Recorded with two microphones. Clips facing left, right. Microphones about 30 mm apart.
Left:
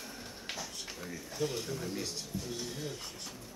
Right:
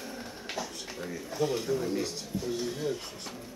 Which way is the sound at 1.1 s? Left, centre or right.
Centre.